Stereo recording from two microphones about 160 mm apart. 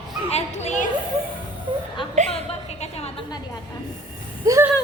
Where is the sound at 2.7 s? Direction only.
40° left (ahead or behind).